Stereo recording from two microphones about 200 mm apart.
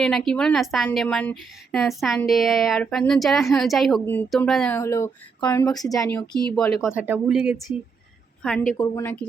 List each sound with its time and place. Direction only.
0.0 s a woman's voice: 5° left (ahead or behind)
4.8 s speech: 15° left (ahead or behind)
6.6 s a woman's voice: 5° right (ahead or behind)
8.8 s speech: 15° left (ahead or behind)